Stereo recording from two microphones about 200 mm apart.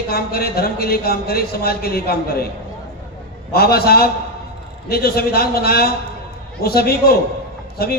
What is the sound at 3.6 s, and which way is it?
A man's voice, 50° left (ahead or behind).